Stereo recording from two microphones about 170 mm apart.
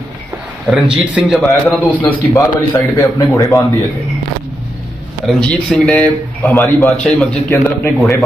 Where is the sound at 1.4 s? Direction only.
10° left (ahead or behind).